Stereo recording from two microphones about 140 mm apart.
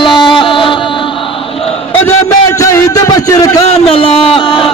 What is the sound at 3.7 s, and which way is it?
Speech, 45° left (ahead or behind).